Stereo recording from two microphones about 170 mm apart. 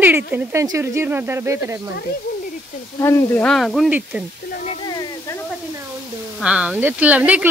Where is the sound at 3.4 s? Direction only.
Centre (ahead or behind).